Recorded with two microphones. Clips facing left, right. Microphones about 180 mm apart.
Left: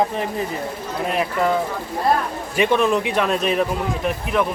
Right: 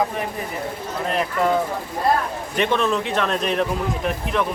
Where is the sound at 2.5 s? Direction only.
10° left (ahead or behind).